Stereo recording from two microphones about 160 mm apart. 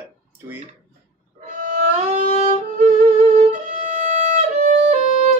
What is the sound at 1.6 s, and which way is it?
Violin, 50° right (ahead or behind).